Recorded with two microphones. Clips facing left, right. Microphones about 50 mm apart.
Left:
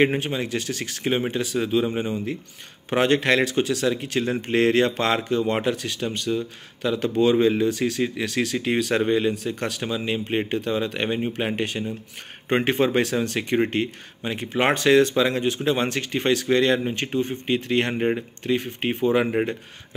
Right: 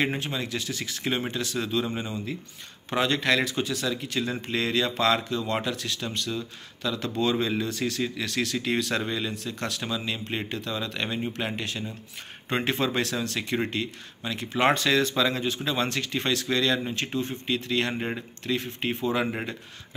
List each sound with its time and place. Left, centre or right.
0.0 s speech: left
0.6 s speech: left
1.0 s speech: centre
4.5 s speech: left
5.0 s speech: left
17.9 s speech: centre